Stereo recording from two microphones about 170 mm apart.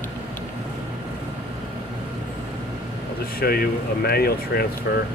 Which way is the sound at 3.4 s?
65° left (ahead or behind).